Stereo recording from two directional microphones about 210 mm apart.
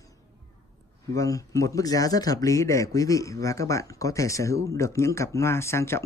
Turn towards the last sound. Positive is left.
turn(degrees=10)  # may be behind; listen again after turning